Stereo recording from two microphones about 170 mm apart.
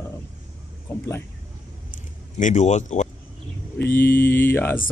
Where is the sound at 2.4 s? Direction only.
45° left (ahead or behind).